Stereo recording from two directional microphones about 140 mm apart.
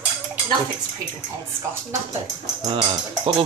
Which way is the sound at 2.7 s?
40° right (ahead or behind).